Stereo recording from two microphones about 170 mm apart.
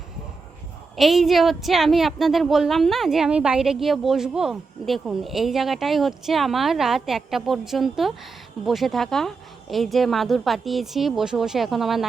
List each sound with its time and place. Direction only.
0.9 s a woman's voice: centre (ahead or behind)